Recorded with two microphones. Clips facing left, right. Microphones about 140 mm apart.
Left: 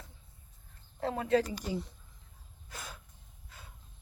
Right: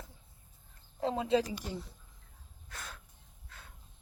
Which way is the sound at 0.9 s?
15° right (ahead or behind).